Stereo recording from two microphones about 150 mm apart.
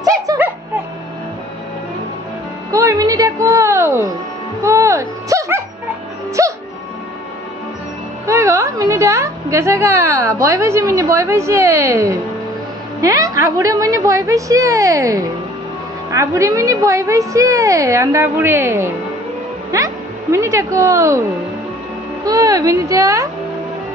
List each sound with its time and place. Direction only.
0.3 s music: 25° right (ahead or behind)
2.7 s music: 20° right (ahead or behind)
8.3 s a woman's voice: 20° right (ahead or behind)
22.2 s a woman's voice: 25° right (ahead or behind)